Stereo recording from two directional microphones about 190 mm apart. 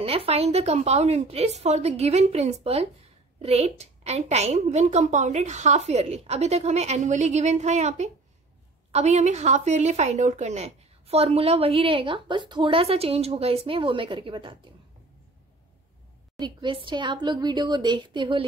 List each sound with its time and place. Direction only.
0.0 s a woman's voice: 30° right (ahead or behind)
16.3 s a woman's voice: 25° right (ahead or behind)